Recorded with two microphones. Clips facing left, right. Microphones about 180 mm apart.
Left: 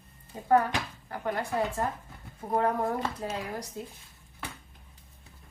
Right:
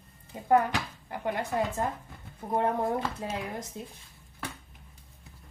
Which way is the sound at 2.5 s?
20° right (ahead or behind).